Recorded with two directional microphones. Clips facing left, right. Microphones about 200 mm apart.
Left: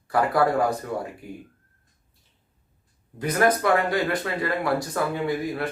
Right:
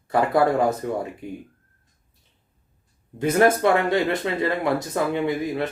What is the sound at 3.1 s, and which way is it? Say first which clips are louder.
Speech: right 4 dB; 25° right (ahead or behind).